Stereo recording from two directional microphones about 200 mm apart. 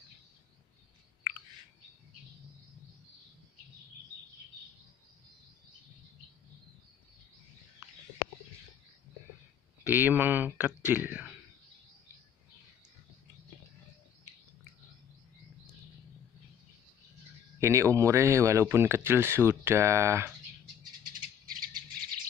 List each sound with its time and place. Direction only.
9.8 s speech: 10° right (ahead or behind)
17.6 s speech: 15° right (ahead or behind)
21.0 s bird: 45° right (ahead or behind)